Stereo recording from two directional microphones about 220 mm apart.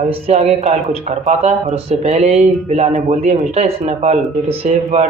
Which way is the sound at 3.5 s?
30° right (ahead or behind).